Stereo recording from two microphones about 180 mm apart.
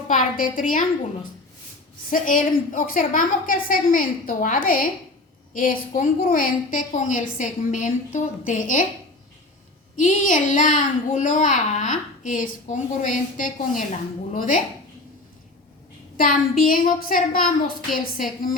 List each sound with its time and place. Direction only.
0.1 s a child's voice: 50° left (ahead or behind)
2.0 s a child's voice: 50° left (ahead or behind)
9.9 s a child's voice: 45° left (ahead or behind)
16.1 s a child's voice: 50° left (ahead or behind)